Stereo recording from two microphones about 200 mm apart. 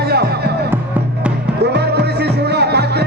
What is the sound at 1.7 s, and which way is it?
Music, 55° right (ahead or behind).